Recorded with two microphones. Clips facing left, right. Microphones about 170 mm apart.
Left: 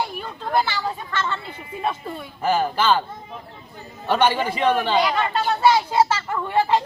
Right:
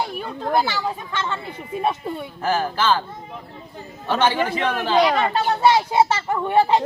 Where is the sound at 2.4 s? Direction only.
10° left (ahead or behind).